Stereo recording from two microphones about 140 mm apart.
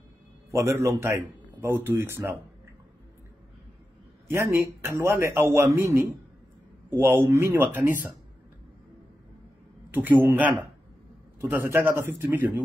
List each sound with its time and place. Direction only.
0.5 s a man's voice: 20° right (ahead or behind)
4.3 s a man's voice: 20° right (ahead or behind)
9.9 s a man's voice: 15° right (ahead or behind)
11.5 s a man's voice: 15° right (ahead or behind)